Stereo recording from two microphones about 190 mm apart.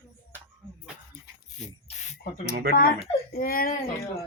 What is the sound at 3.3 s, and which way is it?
Speech, 50° left (ahead or behind).